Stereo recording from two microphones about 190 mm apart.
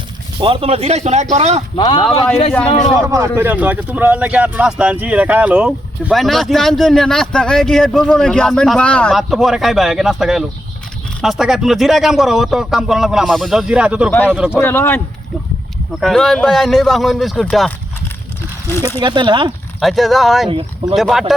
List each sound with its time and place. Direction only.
0.3 s speech: 25° right (ahead or behind)
1.7 s speech: 25° left (ahead or behind)
2.6 s a man's voice: 35° left (ahead or behind)
3.1 s speech: 15° right (ahead or behind)
14.5 s speech: 10° left (ahead or behind)
18.9 s speech: 25° right (ahead or behind)
19.8 s speech: centre (ahead or behind)
20.5 s speech: 25° right (ahead or behind)
20.9 s speech: centre (ahead or behind)